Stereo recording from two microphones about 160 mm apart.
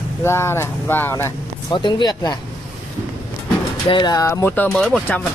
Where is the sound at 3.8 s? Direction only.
30° left (ahead or behind); by 5.2 s 5° left (ahead or behind).